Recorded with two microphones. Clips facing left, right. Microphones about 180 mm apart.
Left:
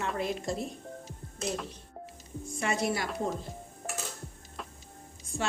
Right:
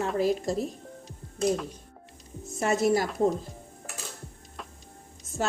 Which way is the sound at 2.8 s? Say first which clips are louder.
Right 10 dB; 45° right (ahead or behind).